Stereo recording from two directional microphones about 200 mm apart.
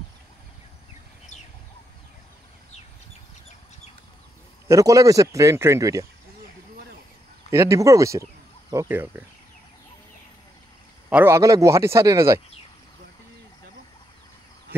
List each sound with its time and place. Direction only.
4.6 s speech: 15° right (ahead or behind)
7.5 s speech: 15° right (ahead or behind)
11.1 s speech: 10° right (ahead or behind)